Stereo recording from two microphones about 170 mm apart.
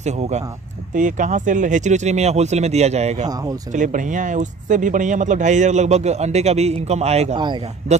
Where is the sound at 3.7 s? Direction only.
50° right (ahead or behind).